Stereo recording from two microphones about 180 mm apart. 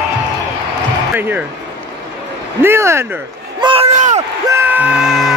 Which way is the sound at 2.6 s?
15° right (ahead or behind).